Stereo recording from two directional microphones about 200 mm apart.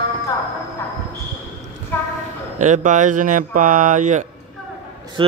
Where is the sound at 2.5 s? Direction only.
40° right (ahead or behind).